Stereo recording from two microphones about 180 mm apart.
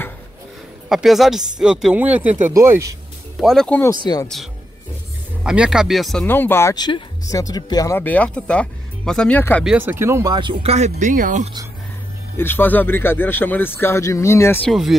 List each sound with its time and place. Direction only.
0.8 s speech: centre (ahead or behind)
3.3 s speech: centre (ahead or behind)
4.0 s speech: 20° left (ahead or behind)
5.4 s speech: 5° right (ahead or behind)
6.2 s speech: 10° left (ahead or behind)
9.7 s speech: 10° right (ahead or behind); by 11.5 s 45° right (ahead or behind)
12.4 s speech: 10° left (ahead or behind)
14.7 s speech: centre (ahead or behind)